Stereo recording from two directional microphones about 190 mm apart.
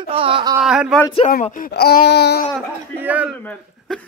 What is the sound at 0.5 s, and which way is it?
Speech, 5° right (ahead or behind).